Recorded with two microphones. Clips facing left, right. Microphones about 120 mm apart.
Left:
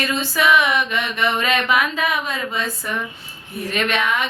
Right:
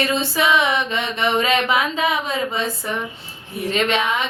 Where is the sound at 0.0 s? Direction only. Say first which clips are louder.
Right 1 dB; 25° right (ahead or behind).